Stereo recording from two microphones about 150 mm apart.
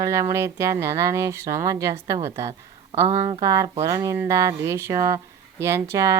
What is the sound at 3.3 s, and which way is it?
A woman's voice, 25° right (ahead or behind).